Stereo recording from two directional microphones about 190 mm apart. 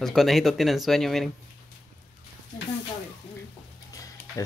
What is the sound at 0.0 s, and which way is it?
Speech, centre (ahead or behind).